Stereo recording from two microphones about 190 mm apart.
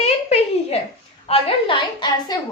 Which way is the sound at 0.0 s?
35° left (ahead or behind).